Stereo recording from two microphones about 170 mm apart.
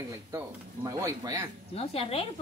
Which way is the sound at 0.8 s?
20° right (ahead or behind).